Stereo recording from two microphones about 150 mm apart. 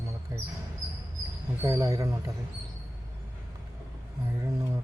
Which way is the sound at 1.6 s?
20° right (ahead or behind).